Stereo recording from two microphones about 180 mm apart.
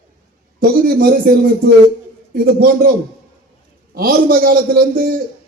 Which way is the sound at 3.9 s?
55° right (ahead or behind).